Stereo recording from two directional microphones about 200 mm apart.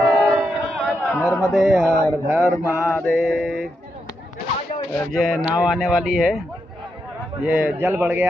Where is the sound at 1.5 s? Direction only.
Centre (ahead or behind).